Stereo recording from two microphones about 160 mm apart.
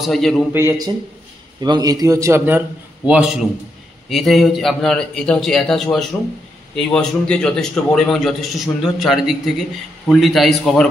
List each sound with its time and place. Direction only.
0.0 s a man's voice: centre (ahead or behind)
0.5 s a man's voice: 15° right (ahead or behind); by 10.9 s 5° left (ahead or behind)